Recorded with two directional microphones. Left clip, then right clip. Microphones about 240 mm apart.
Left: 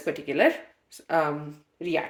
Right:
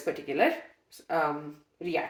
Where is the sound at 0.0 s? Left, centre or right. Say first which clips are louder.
Left 4 dB; left.